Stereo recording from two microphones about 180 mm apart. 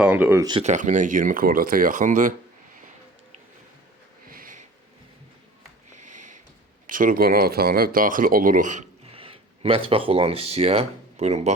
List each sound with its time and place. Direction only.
0.0 s speech: 10° right (ahead or behind)
0.6 s speech: 45° right (ahead or behind)
4.3 s a sound: 50° right (ahead or behind)
5.9 s a sound: 45° right (ahead or behind)
6.8 s speech: 50° right (ahead or behind)
9.1 s speech: 30° right (ahead or behind)